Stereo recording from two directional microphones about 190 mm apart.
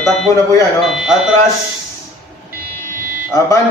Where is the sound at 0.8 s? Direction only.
5° right (ahead or behind).